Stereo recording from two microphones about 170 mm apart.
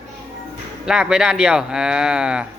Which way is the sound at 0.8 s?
5° right (ahead or behind).